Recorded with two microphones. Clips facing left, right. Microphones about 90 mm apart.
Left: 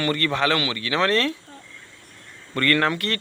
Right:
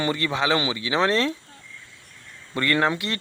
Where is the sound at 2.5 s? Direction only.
15° right (ahead or behind).